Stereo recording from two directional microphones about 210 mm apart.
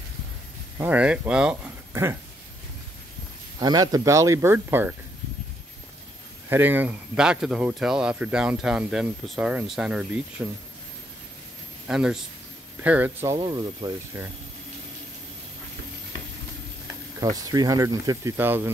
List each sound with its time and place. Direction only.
0.7 s speech: 5° right (ahead or behind)
3.5 s speech: 20° right (ahead or behind)
6.5 s speech: 10° right (ahead or behind)
11.9 s speech: centre (ahead or behind); by 14.2 s 20° right (ahead or behind)
17.2 s speech: 15° right (ahead or behind)